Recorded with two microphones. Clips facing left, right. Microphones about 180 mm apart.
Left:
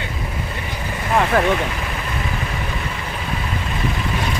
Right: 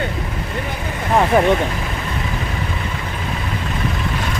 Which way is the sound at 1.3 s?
15° right (ahead or behind).